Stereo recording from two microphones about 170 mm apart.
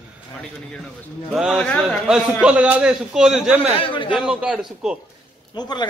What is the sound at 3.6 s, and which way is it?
Speech, 30° left (ahead or behind).